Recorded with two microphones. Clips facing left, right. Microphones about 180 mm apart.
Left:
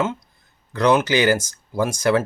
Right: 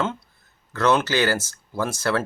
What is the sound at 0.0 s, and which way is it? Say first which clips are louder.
Speech: left 3 dB; 10° left (ahead or behind).